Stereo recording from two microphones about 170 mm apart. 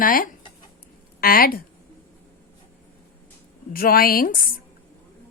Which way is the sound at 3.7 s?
60° left (ahead or behind).